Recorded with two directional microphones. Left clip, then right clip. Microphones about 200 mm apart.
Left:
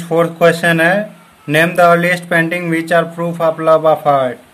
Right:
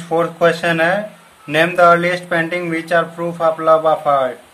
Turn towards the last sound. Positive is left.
turn(degrees=35)  # may be behind; listen again after turning